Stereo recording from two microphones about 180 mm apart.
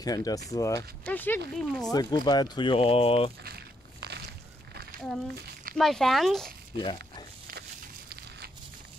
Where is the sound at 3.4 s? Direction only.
65° right (ahead or behind).